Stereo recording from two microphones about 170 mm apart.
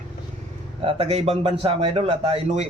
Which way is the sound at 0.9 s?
35° right (ahead or behind).